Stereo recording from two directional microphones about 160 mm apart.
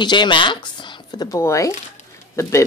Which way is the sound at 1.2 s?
20° left (ahead or behind).